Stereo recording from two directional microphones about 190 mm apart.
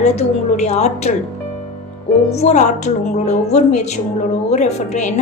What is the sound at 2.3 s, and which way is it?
Speech, 35° left (ahead or behind).